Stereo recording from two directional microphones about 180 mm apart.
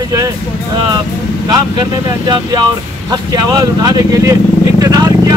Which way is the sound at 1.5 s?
20° right (ahead or behind).